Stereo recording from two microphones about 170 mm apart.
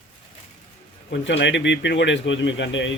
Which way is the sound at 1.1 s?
90° left.